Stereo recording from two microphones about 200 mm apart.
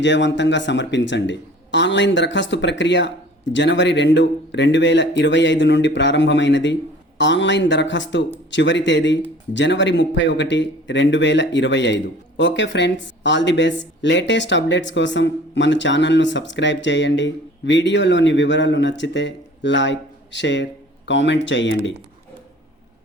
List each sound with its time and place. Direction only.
0.0 s speech: 65° left (ahead or behind)